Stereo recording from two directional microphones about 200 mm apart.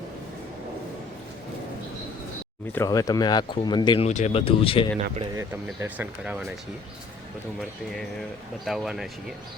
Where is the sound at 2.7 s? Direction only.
15° left (ahead or behind).